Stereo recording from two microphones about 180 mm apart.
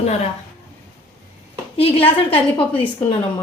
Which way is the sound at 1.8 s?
30° left (ahead or behind).